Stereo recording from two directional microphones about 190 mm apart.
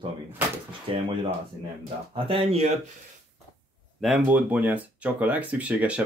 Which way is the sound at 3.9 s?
Centre (ahead or behind).